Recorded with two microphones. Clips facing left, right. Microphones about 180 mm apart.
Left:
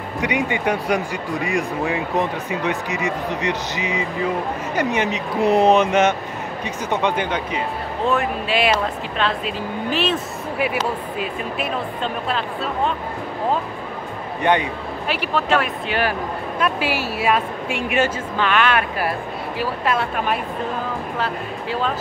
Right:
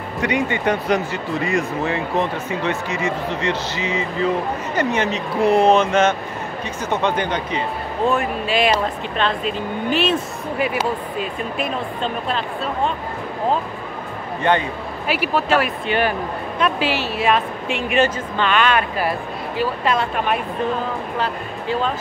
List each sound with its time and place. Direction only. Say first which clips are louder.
0.2 s speech: right 1 dB; 10° left (ahead or behind)
11.1 s speech: right 1 dB; 5° left (ahead or behind)
14.4 s speech: even; 15° left (ahead or behind)
15.0 s speech: right 2 dB; 5° right (ahead or behind)